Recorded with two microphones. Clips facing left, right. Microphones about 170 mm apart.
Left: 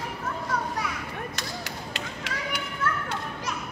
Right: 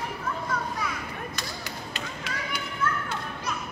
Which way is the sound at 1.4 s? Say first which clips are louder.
Left 1 dB; 85° left.